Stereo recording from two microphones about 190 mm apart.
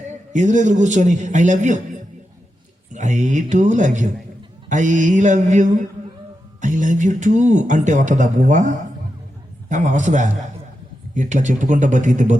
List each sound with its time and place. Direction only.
0.3 s speech: 40° right (ahead or behind)
2.9 s speech: 40° right (ahead or behind)